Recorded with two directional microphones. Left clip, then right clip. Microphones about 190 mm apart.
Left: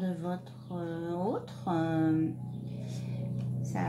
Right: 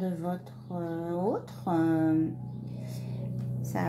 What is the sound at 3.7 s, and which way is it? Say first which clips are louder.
Speech: right 3 dB; 55° right (ahead or behind).